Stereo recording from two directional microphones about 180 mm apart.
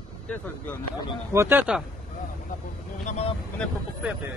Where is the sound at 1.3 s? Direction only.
15° right (ahead or behind).